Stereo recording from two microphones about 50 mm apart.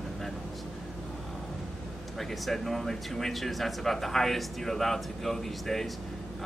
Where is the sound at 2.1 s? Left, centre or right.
Centre.